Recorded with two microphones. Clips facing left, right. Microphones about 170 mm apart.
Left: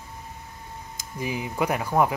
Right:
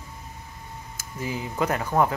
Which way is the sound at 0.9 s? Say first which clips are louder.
Left 1 dB; 15° left (ahead or behind).